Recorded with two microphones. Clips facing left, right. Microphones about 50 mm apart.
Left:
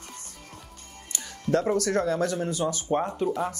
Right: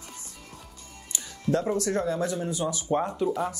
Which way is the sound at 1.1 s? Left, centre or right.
Left.